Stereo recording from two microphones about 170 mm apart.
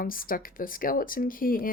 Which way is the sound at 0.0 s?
55° left (ahead or behind).